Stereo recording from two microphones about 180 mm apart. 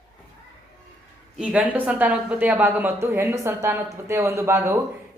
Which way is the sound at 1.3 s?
5° right (ahead or behind).